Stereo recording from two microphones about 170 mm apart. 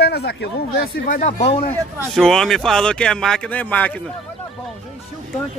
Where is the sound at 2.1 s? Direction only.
Centre (ahead or behind).